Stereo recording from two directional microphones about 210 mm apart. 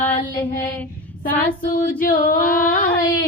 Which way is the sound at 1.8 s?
40° left (ahead or behind).